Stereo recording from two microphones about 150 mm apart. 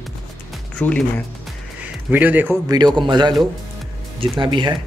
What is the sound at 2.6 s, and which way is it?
A man's voice, 30° right (ahead or behind).